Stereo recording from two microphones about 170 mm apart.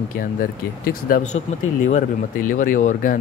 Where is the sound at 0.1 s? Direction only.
55° left (ahead or behind).